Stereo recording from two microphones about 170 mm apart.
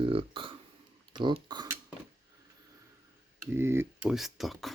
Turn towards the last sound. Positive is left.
turn(degrees=0)  # may be behind; listen again after turning